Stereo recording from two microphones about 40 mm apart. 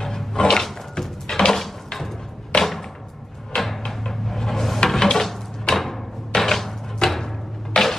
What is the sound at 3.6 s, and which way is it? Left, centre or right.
Cupboard open or close, centre.